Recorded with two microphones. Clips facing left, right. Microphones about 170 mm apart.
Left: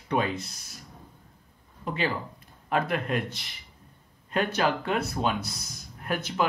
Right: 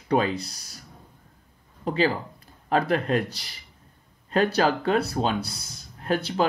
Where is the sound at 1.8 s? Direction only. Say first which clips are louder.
Right 6 dB; 35° right (ahead or behind).